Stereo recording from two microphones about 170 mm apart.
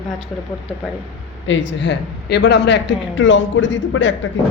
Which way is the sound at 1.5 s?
90° left.